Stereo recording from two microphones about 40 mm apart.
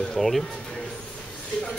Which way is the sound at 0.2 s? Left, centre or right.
Centre.